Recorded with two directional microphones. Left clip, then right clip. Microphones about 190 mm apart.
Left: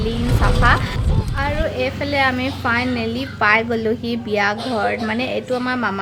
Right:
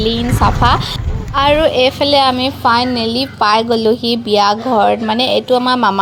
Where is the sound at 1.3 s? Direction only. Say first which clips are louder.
Right 12 dB; 40° right (ahead or behind).